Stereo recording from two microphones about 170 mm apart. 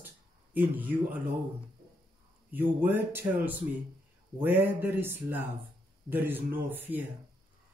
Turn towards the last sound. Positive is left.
turn(degrees=-10)  # may be behind; listen again after turning